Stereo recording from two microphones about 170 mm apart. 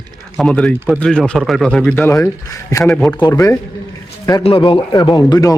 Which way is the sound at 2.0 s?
15° left (ahead or behind).